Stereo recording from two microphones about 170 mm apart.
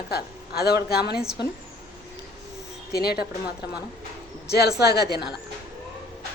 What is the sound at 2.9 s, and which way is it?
A woman's voice, 65° left (ahead or behind).